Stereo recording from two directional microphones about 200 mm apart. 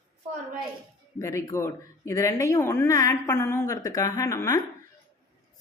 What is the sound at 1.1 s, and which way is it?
Speech, 15° left (ahead or behind).